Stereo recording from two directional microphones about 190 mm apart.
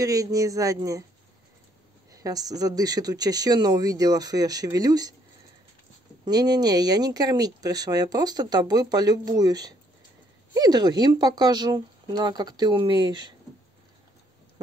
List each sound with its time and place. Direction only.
0.0 s speech: 20° right (ahead or behind)
2.0 s speech: 20° right (ahead or behind)
6.2 s speech: 20° right (ahead or behind)